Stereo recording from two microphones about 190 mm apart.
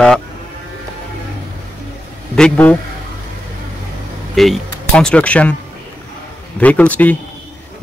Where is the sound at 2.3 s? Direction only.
5° left (ahead or behind).